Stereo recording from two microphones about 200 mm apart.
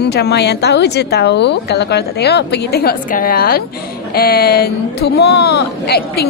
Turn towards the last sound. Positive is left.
turn(degrees=55)  # may be behind; listen again after turning